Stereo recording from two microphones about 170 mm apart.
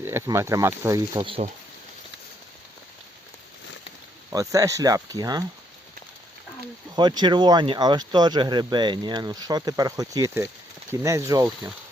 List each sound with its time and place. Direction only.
0.0 s speech: 15° right (ahead or behind); by 1.5 s 30° right (ahead or behind)
4.3 s speech: 20° right (ahead or behind)
6.9 s speech: 25° right (ahead or behind)